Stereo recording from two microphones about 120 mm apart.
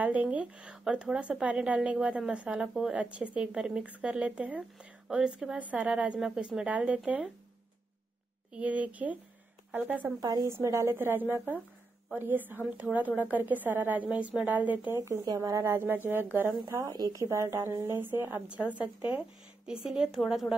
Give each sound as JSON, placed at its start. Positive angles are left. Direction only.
{"t": 0.0, "sound": "speech", "side_deg": -10}
{"t": 8.5, "sound": "speech", "side_deg": -10}
{"t": 10.2, "sound": "speech", "side_deg": -30}
{"t": 15.0, "sound": "speech", "side_deg": -25}